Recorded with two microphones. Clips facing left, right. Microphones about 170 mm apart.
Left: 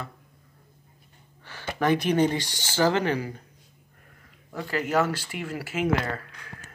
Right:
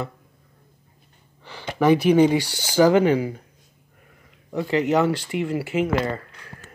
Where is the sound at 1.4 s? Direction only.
15° right (ahead or behind).